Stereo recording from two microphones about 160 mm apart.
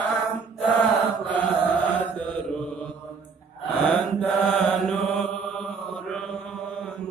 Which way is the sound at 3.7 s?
5° left (ahead or behind).